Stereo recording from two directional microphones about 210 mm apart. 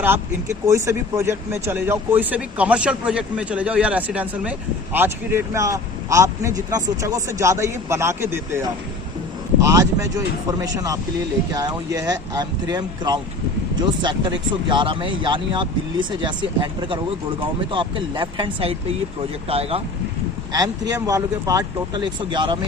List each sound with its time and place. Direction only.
0.7 s a man's voice: 15° right (ahead or behind)
9.6 s a man's voice: 15° right (ahead or behind)
20.5 s a man's voice: 15° right (ahead or behind)